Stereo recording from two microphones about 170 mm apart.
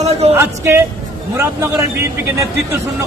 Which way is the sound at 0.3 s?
15° right (ahead or behind).